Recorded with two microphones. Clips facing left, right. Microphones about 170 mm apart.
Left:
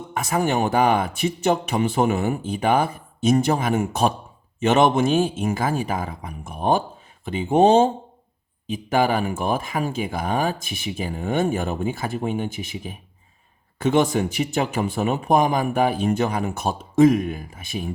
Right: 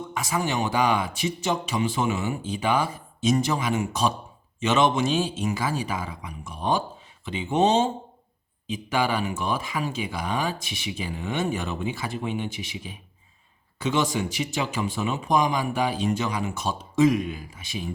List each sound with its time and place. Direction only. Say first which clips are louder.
0.1 s speech: left 6 dB; 55° left (ahead or behind)